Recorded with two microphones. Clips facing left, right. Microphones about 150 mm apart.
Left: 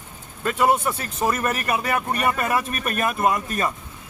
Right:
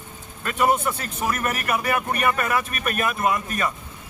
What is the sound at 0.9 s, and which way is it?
Speech, 25° left (ahead or behind).